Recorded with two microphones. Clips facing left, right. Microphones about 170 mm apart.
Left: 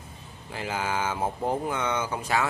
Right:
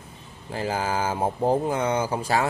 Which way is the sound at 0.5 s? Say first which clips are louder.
Right 4 dB; 35° right (ahead or behind).